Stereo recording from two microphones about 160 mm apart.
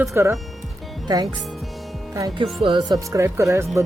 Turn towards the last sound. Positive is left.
turn(degrees=-20)  # may be behind; listen again after turning